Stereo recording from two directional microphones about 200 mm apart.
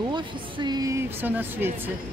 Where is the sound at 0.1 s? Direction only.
20° right (ahead or behind).